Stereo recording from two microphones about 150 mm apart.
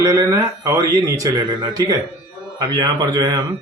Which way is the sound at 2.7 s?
25° right (ahead or behind).